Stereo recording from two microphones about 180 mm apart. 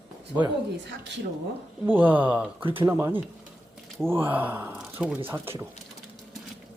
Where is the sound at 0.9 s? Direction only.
75° right (ahead or behind).